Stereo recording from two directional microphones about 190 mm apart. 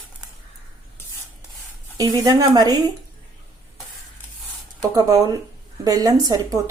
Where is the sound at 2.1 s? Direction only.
20° right (ahead or behind).